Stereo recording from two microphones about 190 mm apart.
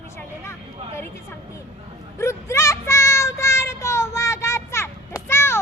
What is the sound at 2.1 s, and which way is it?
Child singing, 15° left (ahead or behind).